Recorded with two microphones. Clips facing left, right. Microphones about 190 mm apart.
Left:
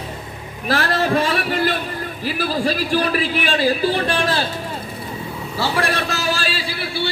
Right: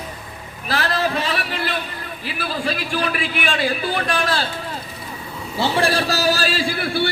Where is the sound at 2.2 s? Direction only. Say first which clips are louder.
Left 4 dB; 40° left (ahead or behind).